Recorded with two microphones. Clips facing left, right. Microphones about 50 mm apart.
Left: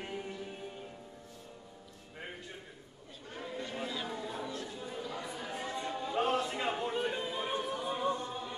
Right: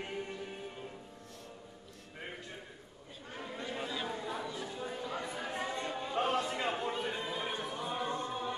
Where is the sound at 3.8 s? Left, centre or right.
Centre.